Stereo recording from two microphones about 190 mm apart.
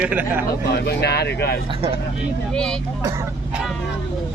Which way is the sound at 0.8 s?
60° left (ahead or behind).